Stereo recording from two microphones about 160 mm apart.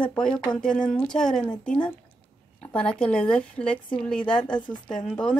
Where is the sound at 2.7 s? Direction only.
5° left (ahead or behind).